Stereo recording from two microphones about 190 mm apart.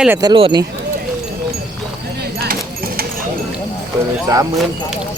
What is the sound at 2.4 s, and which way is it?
Keys jangling, 55° right (ahead or behind).